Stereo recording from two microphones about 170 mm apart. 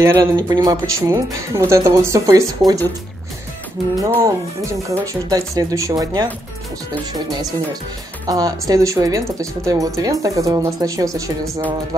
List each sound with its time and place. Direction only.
0.0 s speech: 15° right (ahead or behind)
4.0 s speech: 20° right (ahead or behind)
8.3 s speech: 20° right (ahead or behind)